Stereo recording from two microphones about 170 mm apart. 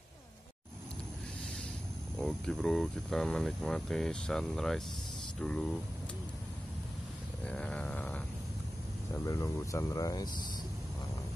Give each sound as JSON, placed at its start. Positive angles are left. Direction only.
{"t": 2.1, "sound": "speech", "side_deg": 0}
{"t": 7.4, "sound": "grunt", "side_deg": 5}
{"t": 9.1, "sound": "speech", "side_deg": 20}